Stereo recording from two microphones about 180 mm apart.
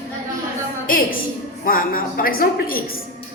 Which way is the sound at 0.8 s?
50° left (ahead or behind).